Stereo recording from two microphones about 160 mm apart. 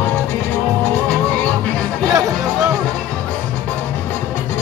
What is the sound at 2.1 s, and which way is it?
Music, 20° right (ahead or behind).